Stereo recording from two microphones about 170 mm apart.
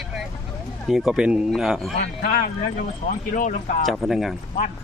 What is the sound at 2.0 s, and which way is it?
Speech, 55° left (ahead or behind).